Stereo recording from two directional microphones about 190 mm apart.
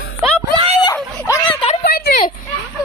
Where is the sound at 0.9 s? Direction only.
10° left (ahead or behind).